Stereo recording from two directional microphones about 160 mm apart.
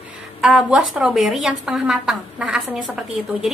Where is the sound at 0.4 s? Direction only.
5° right (ahead or behind).